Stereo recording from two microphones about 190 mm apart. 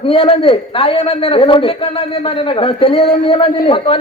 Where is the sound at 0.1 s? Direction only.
30° left (ahead or behind).